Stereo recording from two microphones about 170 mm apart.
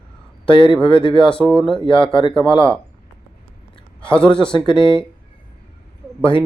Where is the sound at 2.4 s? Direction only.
30° left (ahead or behind).